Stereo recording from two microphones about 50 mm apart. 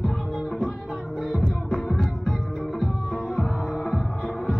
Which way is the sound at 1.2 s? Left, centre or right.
Centre.